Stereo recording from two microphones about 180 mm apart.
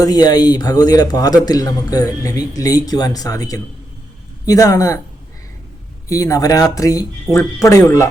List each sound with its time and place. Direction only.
0.0 s a man's voice: 20° left (ahead or behind)
6.1 s a man's voice: 20° left (ahead or behind)